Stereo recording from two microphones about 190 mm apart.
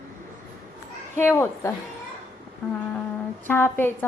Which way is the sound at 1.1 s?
10° left (ahead or behind).